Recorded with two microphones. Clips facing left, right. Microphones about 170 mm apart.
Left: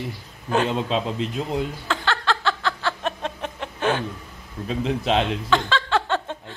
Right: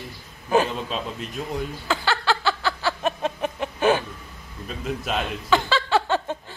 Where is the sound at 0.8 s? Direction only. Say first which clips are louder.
Left 6 dB; 90° left.